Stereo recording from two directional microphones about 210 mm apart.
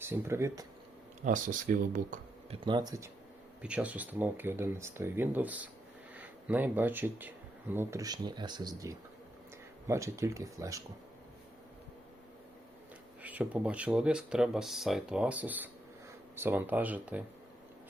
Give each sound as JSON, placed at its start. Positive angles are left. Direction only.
{"t": 0.0, "sound": "speech", "side_deg": -10}
{"t": 1.2, "sound": "speech", "side_deg": -40}
{"t": 2.6, "sound": "speech", "side_deg": -20}
{"t": 3.6, "sound": "speech", "side_deg": -5}
{"t": 13.2, "sound": "speech", "side_deg": -5}